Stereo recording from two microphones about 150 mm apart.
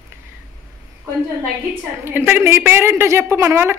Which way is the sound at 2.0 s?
15° right (ahead or behind).